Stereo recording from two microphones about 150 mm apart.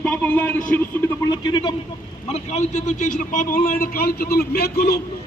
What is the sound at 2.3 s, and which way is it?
A man's voice, 50° left (ahead or behind).